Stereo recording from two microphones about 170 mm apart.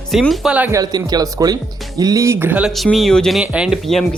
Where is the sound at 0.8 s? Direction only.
20° right (ahead or behind).